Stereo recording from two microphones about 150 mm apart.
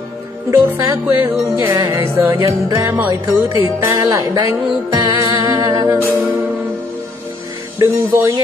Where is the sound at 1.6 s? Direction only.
20° right (ahead or behind).